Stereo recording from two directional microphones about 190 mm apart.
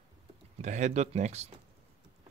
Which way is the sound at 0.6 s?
40° right (ahead or behind).